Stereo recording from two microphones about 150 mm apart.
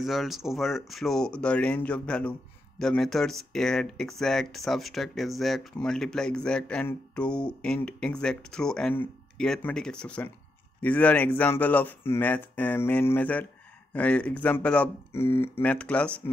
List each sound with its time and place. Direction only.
0.0 s speech: centre (ahead or behind)